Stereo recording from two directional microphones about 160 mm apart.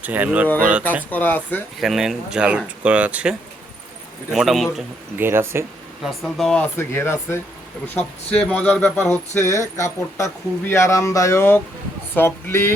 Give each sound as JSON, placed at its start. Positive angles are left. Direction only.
{"t": 0.0, "sound": "speech", "side_deg": -10}
{"t": 1.1, "sound": "speech", "side_deg": 10}
{"t": 1.8, "sound": "speech", "side_deg": 0}
{"t": 5.1, "sound": "speech", "side_deg": -15}
{"t": 6.0, "sound": "speech", "side_deg": 0}